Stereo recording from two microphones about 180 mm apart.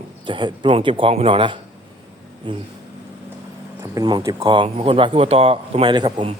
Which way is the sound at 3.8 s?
20° right (ahead or behind).